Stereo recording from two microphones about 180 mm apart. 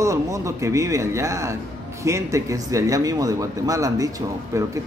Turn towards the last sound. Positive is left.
turn(degrees=-15)  # may be behind; listen again after turning